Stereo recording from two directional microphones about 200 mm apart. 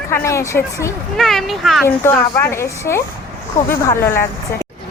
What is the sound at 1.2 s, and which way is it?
Speech, centre (ahead or behind).